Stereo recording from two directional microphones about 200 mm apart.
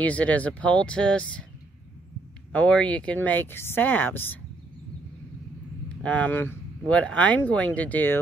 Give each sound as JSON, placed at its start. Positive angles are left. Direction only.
{"t": 0.0, "sound": "speech", "side_deg": 5}
{"t": 2.5, "sound": "speech", "side_deg": 5}
{"t": 6.0, "sound": "speech", "side_deg": 10}